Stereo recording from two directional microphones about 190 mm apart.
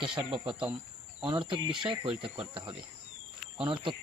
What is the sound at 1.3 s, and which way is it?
Speech, 25° right (ahead or behind).